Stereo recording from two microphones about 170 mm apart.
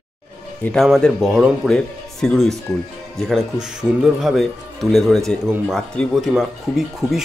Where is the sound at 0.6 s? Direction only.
Centre (ahead or behind).